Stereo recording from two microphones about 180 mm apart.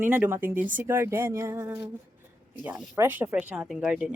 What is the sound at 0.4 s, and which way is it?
Speech, 50° right (ahead or behind).